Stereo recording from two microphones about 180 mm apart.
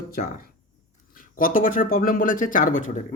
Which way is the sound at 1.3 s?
50° left (ahead or behind).